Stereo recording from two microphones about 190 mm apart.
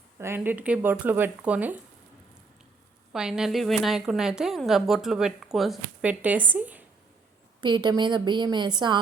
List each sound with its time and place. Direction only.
0.2 s speech: 10° right (ahead or behind)
3.1 s a woman's voice: 5° right (ahead or behind)
7.6 s a woman's voice: 25° right (ahead or behind)